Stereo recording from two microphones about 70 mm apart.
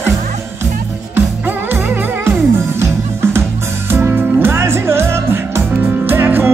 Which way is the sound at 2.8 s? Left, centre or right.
Right.